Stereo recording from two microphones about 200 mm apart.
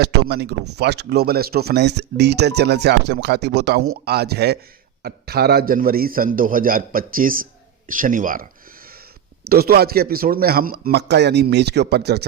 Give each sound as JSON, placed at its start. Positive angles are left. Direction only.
{"t": 0.0, "sound": "speech", "side_deg": -55}
{"t": 9.5, "sound": "speech", "side_deg": -50}